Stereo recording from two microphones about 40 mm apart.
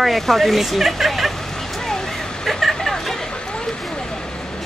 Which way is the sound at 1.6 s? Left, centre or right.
Centre.